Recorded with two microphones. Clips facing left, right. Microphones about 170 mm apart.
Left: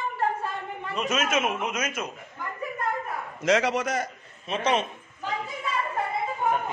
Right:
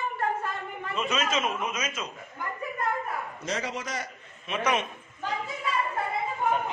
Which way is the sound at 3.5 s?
80° left.